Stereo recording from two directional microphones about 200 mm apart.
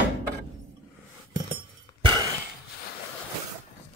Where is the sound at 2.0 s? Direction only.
25° right (ahead or behind).